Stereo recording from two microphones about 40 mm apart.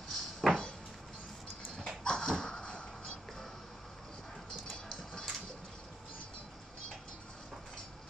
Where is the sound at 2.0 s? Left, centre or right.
Centre.